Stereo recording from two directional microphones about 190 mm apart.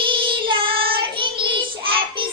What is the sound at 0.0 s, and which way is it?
Child singing, 25° right (ahead or behind).